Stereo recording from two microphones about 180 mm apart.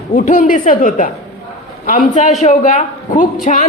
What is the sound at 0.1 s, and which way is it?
A woman's voice, 50° left (ahead or behind).